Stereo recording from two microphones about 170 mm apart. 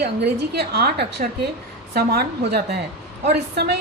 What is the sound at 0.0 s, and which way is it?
A woman's voice, 75° right (ahead or behind).